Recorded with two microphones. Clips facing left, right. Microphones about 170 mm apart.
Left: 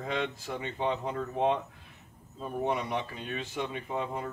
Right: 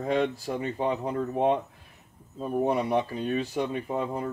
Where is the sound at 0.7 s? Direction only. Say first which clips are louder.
Right 2 dB; 10° right (ahead or behind).